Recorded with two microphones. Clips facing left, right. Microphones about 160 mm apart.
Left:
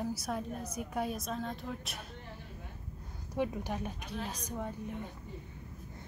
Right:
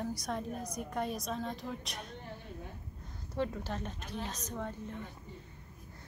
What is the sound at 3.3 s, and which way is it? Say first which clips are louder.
Speech: left 1 dB; 15° left (ahead or behind).